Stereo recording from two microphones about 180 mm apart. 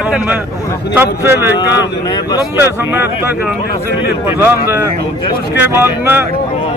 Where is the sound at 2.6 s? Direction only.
15° right (ahead or behind).